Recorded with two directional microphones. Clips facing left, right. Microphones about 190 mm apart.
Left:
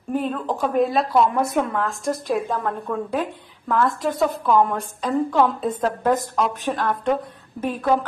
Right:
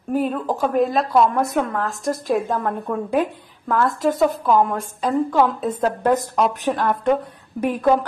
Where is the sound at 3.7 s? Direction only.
Centre (ahead or behind).